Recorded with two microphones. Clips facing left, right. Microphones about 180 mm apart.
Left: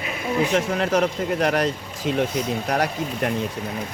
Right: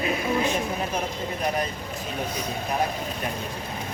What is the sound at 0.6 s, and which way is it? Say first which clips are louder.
Speech: left 7 dB; 90° left.